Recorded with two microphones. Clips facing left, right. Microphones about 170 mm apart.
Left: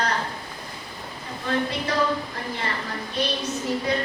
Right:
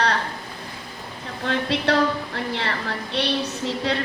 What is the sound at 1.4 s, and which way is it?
Speech, 75° right (ahead or behind).